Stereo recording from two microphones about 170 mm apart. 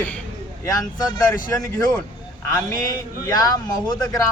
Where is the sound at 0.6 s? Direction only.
20° left (ahead or behind).